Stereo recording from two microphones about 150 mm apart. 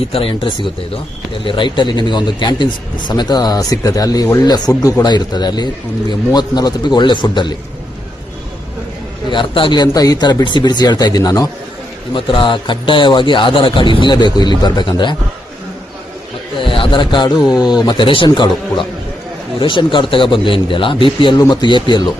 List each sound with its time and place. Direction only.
0.1 s speech: 35° left (ahead or behind)
9.3 s speech: 35° left (ahead or behind)
16.6 s speech: 35° left (ahead or behind)